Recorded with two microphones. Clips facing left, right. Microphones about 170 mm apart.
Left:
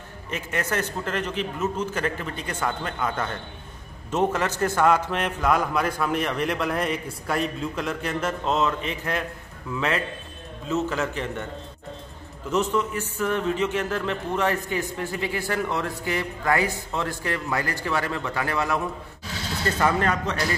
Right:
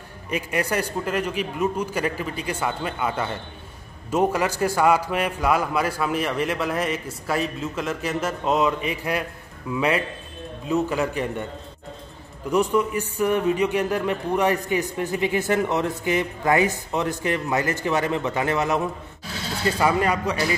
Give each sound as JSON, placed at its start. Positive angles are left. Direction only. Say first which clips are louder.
{"t": 0.3, "sound": "a man's voice", "louder": "right 3 dB", "side_deg": -10}
{"t": 12.4, "sound": "a man's voice", "louder": "right 3 dB", "side_deg": -15}
{"t": 19.6, "sound": "a man's voice", "louder": "right 2 dB", "side_deg": -10}